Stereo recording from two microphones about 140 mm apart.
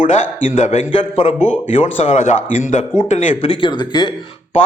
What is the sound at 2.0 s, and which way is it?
A man's voice, 60° left (ahead or behind).